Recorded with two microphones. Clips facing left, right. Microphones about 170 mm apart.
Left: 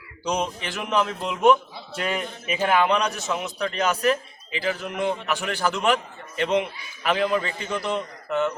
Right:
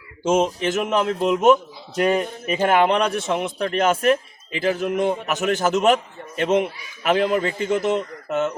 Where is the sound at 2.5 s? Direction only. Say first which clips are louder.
Right 3 dB; 45° right (ahead or behind).